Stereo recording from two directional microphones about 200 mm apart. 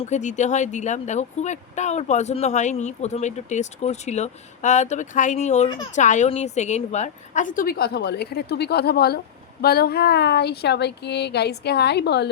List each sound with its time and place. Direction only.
0.0 s a woman's voice: 35° left (ahead or behind); by 12.3 s 55° left (ahead or behind)